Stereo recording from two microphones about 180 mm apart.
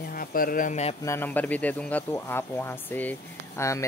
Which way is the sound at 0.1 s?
55° left (ahead or behind).